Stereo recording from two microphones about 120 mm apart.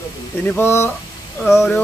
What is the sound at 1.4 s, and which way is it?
Speech, centre (ahead or behind).